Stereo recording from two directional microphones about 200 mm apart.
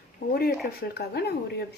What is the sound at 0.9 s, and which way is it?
Speech, 55° left (ahead or behind).